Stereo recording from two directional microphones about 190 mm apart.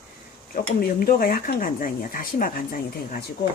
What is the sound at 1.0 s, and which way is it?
Speech, 50° left (ahead or behind).